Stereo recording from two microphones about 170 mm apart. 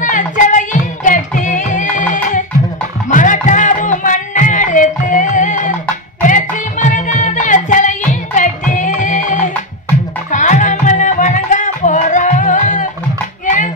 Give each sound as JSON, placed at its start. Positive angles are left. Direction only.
{"t": 0.0, "sound": "music", "side_deg": 50}
{"t": 3.1, "sound": "a sound", "side_deg": 50}
{"t": 6.2, "sound": "music", "side_deg": 50}